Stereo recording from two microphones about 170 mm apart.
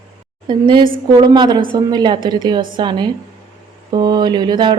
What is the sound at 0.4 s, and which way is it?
A woman's voice, 25° right (ahead or behind).